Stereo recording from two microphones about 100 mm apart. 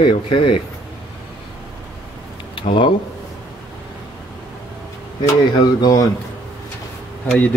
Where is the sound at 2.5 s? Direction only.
55° left (ahead or behind).